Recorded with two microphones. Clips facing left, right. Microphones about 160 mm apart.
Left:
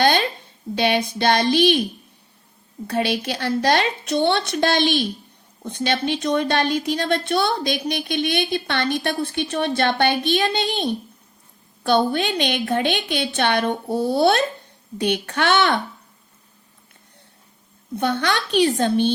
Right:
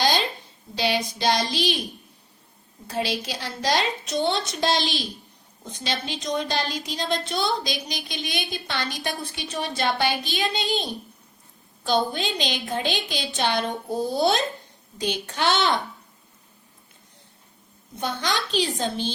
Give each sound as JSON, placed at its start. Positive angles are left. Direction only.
{"t": 0.0, "sound": "a sound", "side_deg": 60}
{"t": 0.8, "sound": "a woman's voice", "side_deg": 60}
{"t": 2.8, "sound": "a woman's voice", "side_deg": 60}
{"t": 17.9, "sound": "a woman's voice", "side_deg": 65}